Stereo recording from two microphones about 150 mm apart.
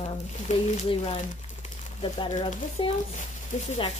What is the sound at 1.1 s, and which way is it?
Crumpling, 50° left (ahead or behind).